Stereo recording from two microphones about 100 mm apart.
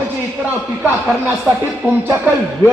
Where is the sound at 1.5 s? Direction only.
15° right (ahead or behind).